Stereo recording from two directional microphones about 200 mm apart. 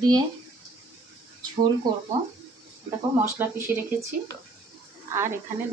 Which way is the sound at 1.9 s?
20° right (ahead or behind).